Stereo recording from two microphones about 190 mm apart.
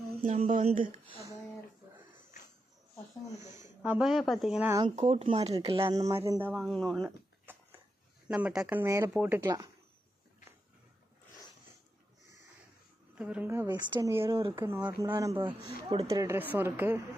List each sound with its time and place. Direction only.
0.2 s speech: 40° right (ahead or behind)
1.0 s speech: 25° right (ahead or behind)
3.3 s speech: 40° left (ahead or behind)
3.8 s speech: 5° right (ahead or behind)
4.9 s speech: 35° right (ahead or behind); by 6.5 s 15° right (ahead or behind)
6.5 s speech: centre (ahead or behind)
8.3 s speech: 5° right (ahead or behind)
13.1 s speech: 5° right (ahead or behind)